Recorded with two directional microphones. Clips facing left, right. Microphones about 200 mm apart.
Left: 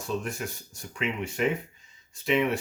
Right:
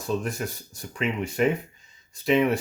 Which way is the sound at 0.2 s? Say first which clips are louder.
Right 3 dB; 40° right (ahead or behind).